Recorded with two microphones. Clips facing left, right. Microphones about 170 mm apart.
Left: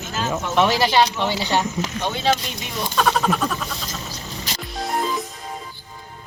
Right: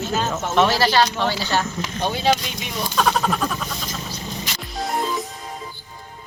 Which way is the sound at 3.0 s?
Centre (ahead or behind).